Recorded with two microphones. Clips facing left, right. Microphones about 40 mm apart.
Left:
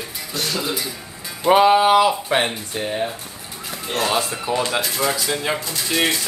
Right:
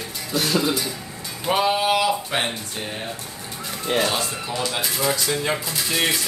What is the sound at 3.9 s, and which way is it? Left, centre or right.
Speech, centre.